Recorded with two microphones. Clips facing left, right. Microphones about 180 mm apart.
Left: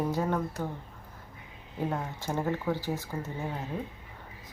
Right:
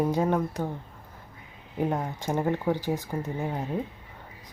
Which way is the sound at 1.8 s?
20° right (ahead or behind).